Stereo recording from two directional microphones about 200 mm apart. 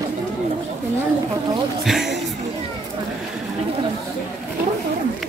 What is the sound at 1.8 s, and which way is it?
Music, centre (ahead or behind).